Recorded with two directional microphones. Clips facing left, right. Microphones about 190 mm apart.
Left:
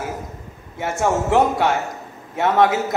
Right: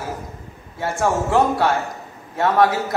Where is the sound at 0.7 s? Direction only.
20° left (ahead or behind).